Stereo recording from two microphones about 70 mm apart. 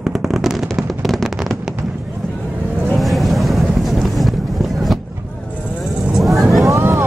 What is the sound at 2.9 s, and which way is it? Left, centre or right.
Vehicle, centre.